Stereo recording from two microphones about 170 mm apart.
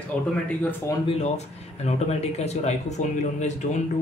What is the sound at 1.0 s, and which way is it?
Speech, 40° left (ahead or behind).